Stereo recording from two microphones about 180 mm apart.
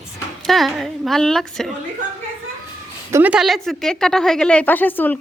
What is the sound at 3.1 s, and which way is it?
A woman's voice, 10° right (ahead or behind).